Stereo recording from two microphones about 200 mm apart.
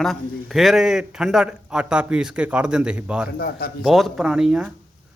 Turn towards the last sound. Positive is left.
turn(degrees=-5)  # may be behind; listen again after turning